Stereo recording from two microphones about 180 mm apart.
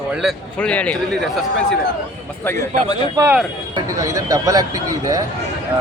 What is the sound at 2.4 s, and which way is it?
Speech, 20° left (ahead or behind).